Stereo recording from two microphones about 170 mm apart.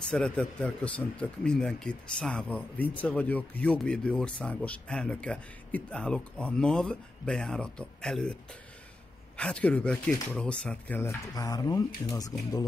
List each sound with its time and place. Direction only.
0.1 s speech: 5° left (ahead or behind)
9.4 s a man's voice: 5° left (ahead or behind)